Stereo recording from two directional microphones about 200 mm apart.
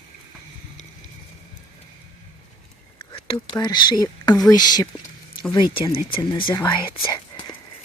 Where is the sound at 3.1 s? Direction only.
25° left (ahead or behind).